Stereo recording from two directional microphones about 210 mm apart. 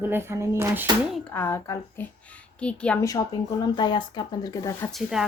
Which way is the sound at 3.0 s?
15° left (ahead or behind).